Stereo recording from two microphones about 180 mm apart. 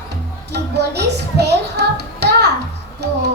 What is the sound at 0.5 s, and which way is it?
Music, 70° right (ahead or behind).